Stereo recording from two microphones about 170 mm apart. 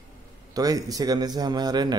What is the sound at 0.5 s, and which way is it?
A man's voice, 20° right (ahead or behind).